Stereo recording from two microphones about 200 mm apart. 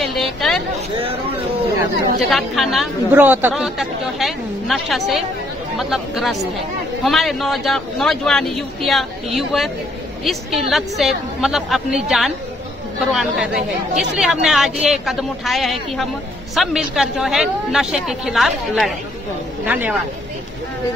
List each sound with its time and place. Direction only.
0.0 s a sound: centre (ahead or behind)
0.7 s speech: 30° right (ahead or behind)
2.1 s a man's voice: centre (ahead or behind)